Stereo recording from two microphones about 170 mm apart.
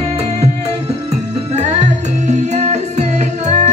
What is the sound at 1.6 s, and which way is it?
Music, 45° right (ahead or behind).